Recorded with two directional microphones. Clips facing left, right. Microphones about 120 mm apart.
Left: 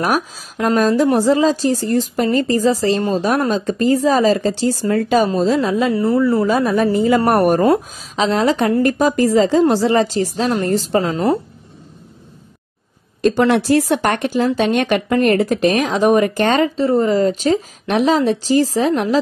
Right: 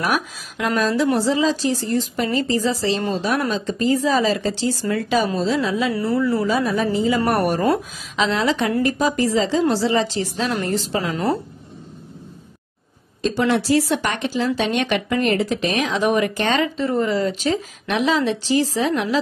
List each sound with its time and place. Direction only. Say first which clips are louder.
0.0 s speech: left 4 dB; 40° left (ahead or behind)
7.6 s a woman's voice: left 5 dB; 30° left (ahead or behind)
8.3 s speech: left 6 dB; 45° left (ahead or behind)
13.2 s speech: left 5 dB; 55° left (ahead or behind)